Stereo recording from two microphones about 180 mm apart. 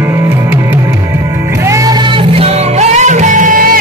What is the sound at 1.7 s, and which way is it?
Music, 20° right (ahead or behind).